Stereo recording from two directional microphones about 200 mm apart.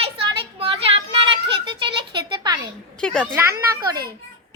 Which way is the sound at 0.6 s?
30° right (ahead or behind).